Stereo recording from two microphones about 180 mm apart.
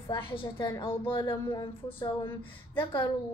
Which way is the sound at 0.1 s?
30° left (ahead or behind).